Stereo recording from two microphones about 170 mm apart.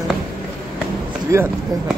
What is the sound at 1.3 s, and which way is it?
Speech, 15° right (ahead or behind).